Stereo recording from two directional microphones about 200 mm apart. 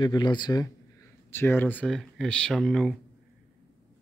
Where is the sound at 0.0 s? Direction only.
20° left (ahead or behind); by 3.0 s 5° left (ahead or behind).